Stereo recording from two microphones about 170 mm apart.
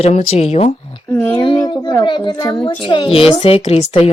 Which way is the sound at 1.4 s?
25° left (ahead or behind).